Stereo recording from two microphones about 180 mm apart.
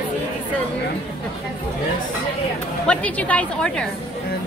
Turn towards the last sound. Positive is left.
turn(degrees=5)  # may be behind; listen again after turning